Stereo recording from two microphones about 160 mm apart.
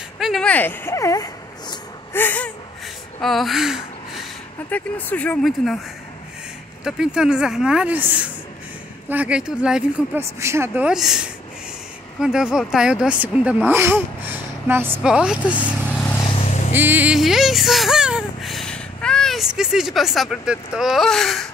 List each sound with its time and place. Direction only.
0.2 s speech: 5° left (ahead or behind)
3.2 s speech: centre (ahead or behind)
4.6 s speech: 10° left (ahead or behind)
6.8 s speech: 5° right (ahead or behind)
16.2 s vehicle: 30° left (ahead or behind)
16.7 s speech: 10° right (ahead or behind)